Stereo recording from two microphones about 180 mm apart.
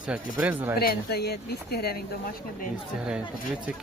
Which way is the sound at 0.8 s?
60° left (ahead or behind).